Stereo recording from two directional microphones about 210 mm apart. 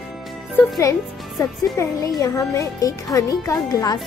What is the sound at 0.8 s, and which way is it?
Speech, 15° left (ahead or behind).